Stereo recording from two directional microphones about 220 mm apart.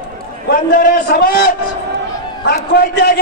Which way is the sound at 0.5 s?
40° left (ahead or behind).